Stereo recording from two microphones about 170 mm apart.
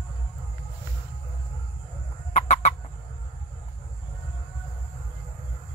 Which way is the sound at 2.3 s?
45° left (ahead or behind).